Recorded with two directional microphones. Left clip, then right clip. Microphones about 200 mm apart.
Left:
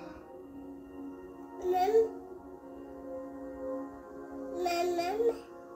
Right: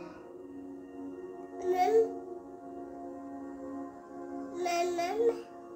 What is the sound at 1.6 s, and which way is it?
Music, 10° right (ahead or behind).